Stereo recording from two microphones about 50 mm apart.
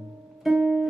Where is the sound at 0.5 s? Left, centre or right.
Centre.